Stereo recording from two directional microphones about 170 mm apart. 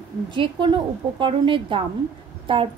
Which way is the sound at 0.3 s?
30° right (ahead or behind).